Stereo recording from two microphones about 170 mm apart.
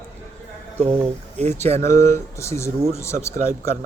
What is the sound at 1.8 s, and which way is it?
Speech, 15° left (ahead or behind).